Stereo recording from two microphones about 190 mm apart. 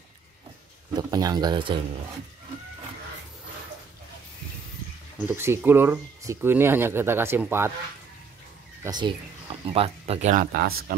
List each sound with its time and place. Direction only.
0.9 s speech: 20° right (ahead or behind)
5.2 s speech: 10° right (ahead or behind)
8.8 s speech: 20° right (ahead or behind)
10.4 s speech: 55° right (ahead or behind)